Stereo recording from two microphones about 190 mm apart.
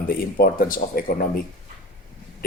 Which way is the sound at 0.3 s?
50° left (ahead or behind).